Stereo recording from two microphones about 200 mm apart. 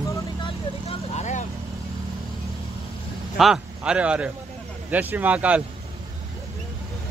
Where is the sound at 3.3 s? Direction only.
Centre (ahead or behind).